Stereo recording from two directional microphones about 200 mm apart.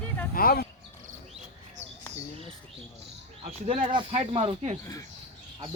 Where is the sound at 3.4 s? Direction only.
35° right (ahead or behind).